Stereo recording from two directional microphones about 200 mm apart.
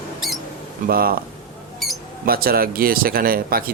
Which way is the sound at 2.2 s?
50° right (ahead or behind).